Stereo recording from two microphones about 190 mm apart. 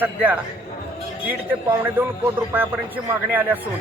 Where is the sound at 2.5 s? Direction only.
10° right (ahead or behind).